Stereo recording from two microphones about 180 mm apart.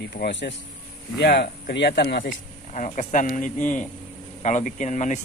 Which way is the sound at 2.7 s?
45° left (ahead or behind).